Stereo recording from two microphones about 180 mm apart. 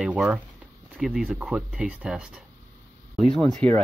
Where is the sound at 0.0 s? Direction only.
5° right (ahead or behind).